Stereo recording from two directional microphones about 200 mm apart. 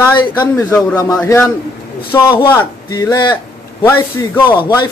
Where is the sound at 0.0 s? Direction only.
15° left (ahead or behind).